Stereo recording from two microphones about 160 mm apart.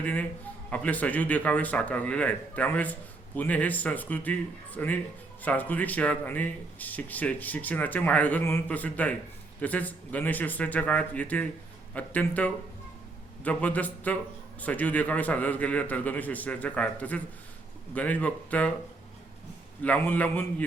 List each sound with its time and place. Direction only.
0.0 s a man's voice: 10° left (ahead or behind)
19.8 s a man's voice: 10° left (ahead or behind)